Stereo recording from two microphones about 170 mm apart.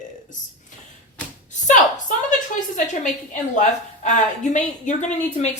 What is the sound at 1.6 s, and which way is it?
Speech, 50° left (ahead or behind).